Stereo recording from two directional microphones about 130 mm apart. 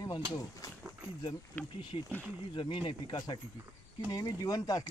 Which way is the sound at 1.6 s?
15° left (ahead or behind).